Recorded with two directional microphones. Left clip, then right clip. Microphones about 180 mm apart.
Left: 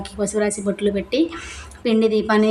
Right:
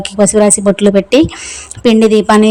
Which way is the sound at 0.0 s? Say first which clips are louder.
Right 12 dB; 40° right (ahead or behind).